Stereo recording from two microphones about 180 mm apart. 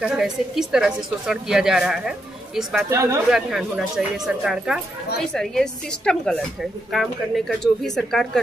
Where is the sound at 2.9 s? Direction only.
15° right (ahead or behind).